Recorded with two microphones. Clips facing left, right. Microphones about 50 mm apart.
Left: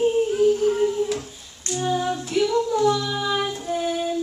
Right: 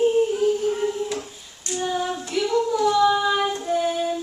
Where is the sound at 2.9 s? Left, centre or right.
Centre.